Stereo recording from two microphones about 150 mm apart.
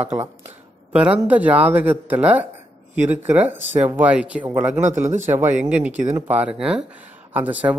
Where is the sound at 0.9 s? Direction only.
10° right (ahead or behind).